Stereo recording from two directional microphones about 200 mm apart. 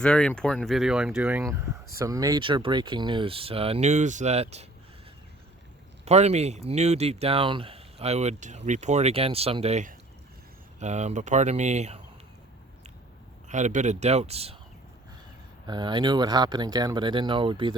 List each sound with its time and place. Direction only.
0.0 s speech: 5° left (ahead or behind); by 4.6 s 35° right (ahead or behind)
6.1 s speech: 35° right (ahead or behind)
13.5 s speech: 35° right (ahead or behind)
15.6 s speech: 20° right (ahead or behind)